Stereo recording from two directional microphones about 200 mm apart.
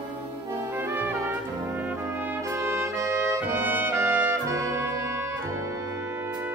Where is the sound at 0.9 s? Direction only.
10° right (ahead or behind).